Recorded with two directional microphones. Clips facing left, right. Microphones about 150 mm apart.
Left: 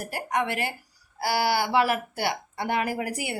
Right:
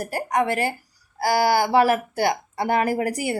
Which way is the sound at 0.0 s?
40° right (ahead or behind).